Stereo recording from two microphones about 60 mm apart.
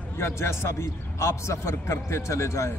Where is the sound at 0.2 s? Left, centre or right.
Left.